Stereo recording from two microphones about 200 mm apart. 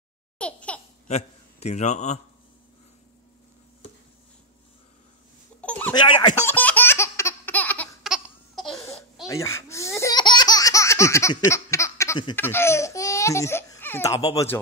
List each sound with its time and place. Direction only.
0.4 s babbling: 5° left (ahead or behind)
1.0 s a man's voice: 35° left (ahead or behind)
5.6 s a sound: 5° left (ahead or behind)
6.4 s laughter: 10° left (ahead or behind)
9.3 s laughter: 15° left (ahead or behind)
12.4 s speech: 10° left (ahead or behind)